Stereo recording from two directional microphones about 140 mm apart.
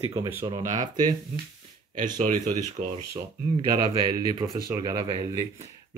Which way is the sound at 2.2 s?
60° right (ahead or behind).